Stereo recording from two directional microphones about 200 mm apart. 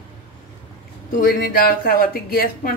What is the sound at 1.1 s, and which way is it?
Speech, 45° left (ahead or behind).